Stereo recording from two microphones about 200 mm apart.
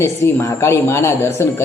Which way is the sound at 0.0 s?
15° left (ahead or behind).